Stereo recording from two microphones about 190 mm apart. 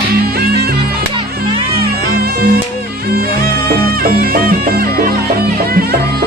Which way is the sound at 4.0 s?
50° right (ahead or behind).